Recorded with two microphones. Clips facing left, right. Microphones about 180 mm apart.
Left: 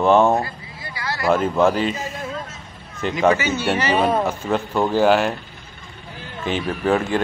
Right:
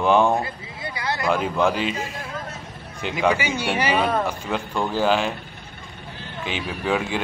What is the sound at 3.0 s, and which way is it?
Speech, 10° right (ahead or behind).